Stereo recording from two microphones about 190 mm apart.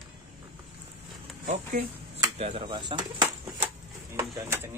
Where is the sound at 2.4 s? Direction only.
30° right (ahead or behind).